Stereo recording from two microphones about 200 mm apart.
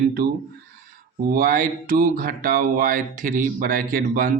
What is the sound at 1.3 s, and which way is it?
Speech, 45° right (ahead or behind).